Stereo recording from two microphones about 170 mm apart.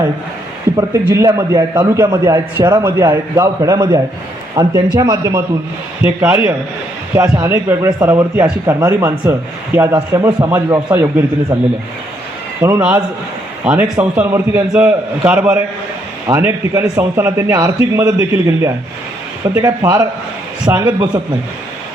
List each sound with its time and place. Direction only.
0.8 s a man's voice: 20° right (ahead or behind)
12.5 s a man's voice: 15° right (ahead or behind)